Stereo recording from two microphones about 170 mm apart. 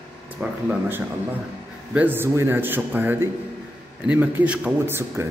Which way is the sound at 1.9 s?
10° right (ahead or behind).